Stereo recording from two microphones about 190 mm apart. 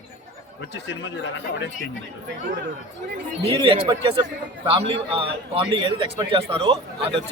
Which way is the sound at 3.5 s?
30° right (ahead or behind).